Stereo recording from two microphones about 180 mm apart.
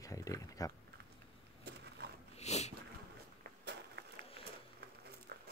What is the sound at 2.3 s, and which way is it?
Sniff, 40° left (ahead or behind).